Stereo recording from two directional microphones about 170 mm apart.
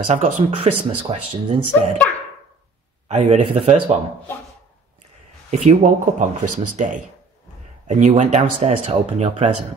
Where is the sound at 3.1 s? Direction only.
35° right (ahead or behind).